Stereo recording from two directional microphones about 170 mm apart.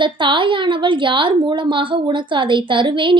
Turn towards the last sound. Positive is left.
turn(degrees=-30)  # may be behind; listen again after turning